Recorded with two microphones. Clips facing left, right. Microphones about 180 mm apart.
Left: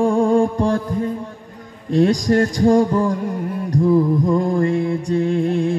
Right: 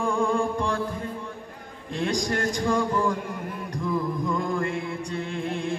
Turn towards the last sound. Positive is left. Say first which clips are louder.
# left 12 dB
turn(degrees=35)  # may be behind; listen again after turning